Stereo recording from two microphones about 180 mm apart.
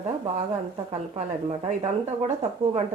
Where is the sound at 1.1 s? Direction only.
40° right (ahead or behind).